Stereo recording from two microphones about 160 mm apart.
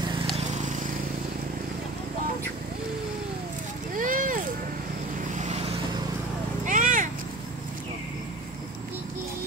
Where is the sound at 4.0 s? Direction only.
55° right (ahead or behind).